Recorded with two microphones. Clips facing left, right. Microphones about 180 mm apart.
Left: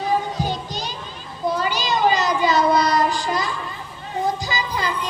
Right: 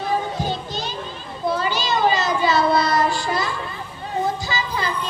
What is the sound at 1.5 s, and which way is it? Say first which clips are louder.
Child singing: even; 15° left (ahead or behind).